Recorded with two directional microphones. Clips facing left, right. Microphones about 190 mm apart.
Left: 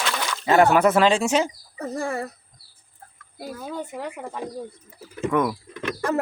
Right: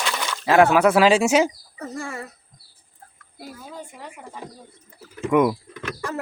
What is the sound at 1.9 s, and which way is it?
Speech, 35° left (ahead or behind).